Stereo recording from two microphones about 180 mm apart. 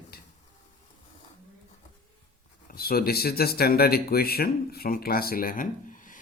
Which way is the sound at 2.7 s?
60° left (ahead or behind).